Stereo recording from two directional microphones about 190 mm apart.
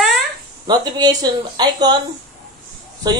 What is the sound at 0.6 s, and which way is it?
Speech, 20° right (ahead or behind).